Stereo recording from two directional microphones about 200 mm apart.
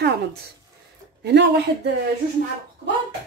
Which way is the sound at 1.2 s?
60° right (ahead or behind).